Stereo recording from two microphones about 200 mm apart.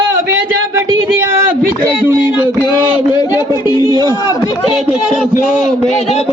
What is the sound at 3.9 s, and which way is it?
Speech, 20° right (ahead or behind).